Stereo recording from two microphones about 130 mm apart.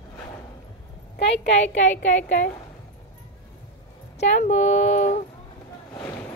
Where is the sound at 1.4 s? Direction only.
65° left (ahead or behind).